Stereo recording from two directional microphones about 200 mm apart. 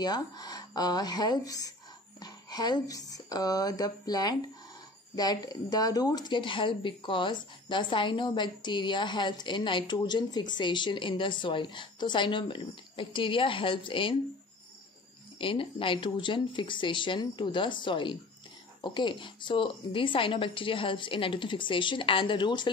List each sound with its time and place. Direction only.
0.0 s speech: 20° left (ahead or behind)
15.3 s speech: 25° left (ahead or behind)